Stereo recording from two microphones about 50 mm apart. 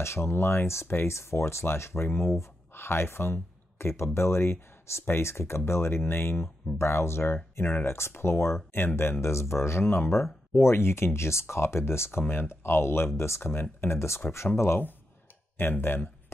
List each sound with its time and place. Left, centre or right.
0.0 s speech: left
8.7 s speech: left
15.5 s speech: left